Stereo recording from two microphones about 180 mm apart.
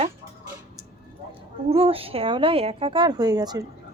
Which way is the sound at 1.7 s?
30° right (ahead or behind).